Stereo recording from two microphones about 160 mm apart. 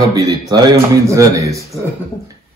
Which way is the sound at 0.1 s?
25° right (ahead or behind).